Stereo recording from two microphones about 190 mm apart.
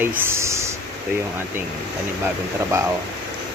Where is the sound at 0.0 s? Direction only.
10° right (ahead or behind).